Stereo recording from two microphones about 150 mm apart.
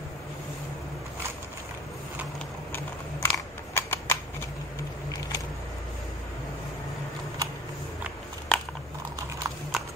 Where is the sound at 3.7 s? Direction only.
15° left (ahead or behind).